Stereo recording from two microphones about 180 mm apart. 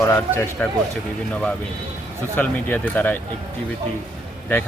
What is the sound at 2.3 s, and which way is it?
Speech, 10° left (ahead or behind).